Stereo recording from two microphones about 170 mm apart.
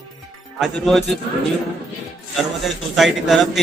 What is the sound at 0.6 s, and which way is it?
Speech, centre (ahead or behind).